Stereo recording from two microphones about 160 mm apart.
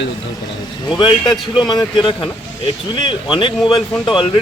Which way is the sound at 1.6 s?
30° left (ahead or behind).